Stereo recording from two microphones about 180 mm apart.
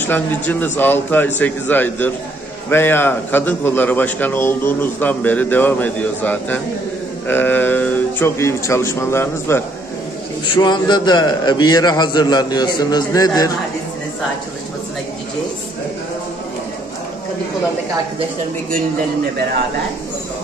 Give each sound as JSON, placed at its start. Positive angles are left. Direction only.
{"t": 0.0, "sound": "a man's voice", "side_deg": 10}
{"t": 10.4, "sound": "a man's voice", "side_deg": 25}